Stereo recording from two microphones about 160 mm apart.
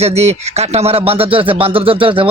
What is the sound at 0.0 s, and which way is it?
A man's voice, 40° right (ahead or behind).